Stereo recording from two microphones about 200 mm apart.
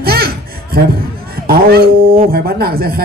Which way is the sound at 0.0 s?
50° right (ahead or behind).